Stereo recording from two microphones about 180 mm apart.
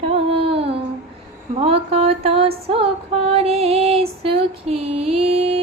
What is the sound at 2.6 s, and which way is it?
Female singing, 30° right (ahead or behind).